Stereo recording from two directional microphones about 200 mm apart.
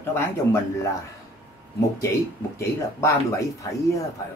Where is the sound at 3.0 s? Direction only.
15° left (ahead or behind).